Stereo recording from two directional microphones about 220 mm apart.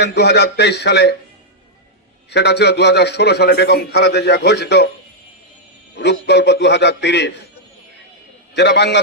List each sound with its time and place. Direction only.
0.0 s a man's voice: 50° left (ahead or behind)
2.3 s a man's voice: 50° left (ahead or behind)
6.0 s a man's voice: 50° left (ahead or behind)
8.5 s a man's voice: 50° left (ahead or behind)